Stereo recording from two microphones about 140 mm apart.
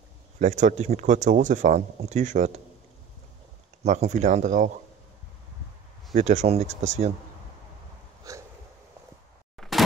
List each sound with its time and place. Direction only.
0.4 s speech: 60° right (ahead or behind)
3.8 s speech: 55° right (ahead or behind)
6.1 s speech: 55° right (ahead or behind)
8.2 s hiccup: 25° right (ahead or behind)
9.6 s a sound: centre (ahead or behind)